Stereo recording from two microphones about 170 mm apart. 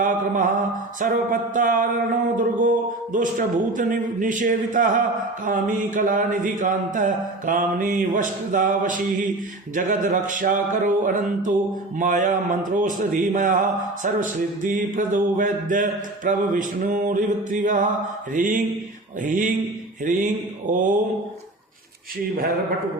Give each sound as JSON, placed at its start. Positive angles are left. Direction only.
{"t": 0.0, "sound": "a man's voice", "side_deg": -50}
{"t": 20.7, "sound": "a man's voice", "side_deg": -50}